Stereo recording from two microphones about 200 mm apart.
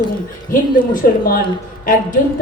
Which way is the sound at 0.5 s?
45° left (ahead or behind).